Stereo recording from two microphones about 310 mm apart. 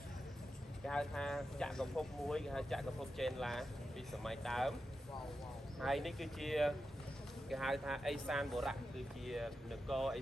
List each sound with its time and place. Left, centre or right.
0.9 s speech: centre
5.8 s speech: centre